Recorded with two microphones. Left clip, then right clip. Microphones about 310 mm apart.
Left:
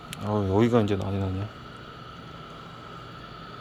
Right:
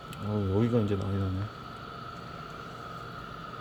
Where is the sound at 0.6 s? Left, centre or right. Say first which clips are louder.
Left 6 dB; centre.